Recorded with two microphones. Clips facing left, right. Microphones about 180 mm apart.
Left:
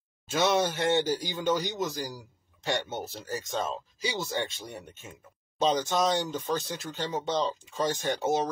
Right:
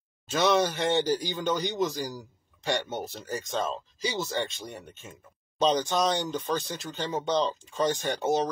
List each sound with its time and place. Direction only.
0.3 s speech: 10° left (ahead or behind)